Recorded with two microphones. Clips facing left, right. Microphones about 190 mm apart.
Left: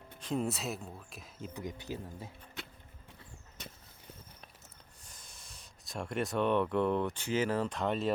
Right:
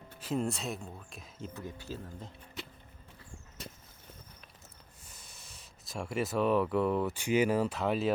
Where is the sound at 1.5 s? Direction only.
15° left (ahead or behind).